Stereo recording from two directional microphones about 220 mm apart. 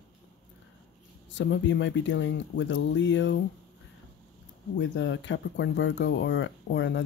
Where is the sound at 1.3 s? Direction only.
55° left (ahead or behind).